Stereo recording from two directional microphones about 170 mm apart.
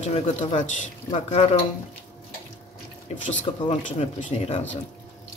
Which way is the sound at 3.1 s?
40° left (ahead or behind).